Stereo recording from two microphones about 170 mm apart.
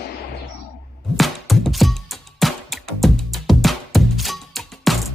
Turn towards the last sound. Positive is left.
turn(degrees=0)  # may be behind; listen again after turning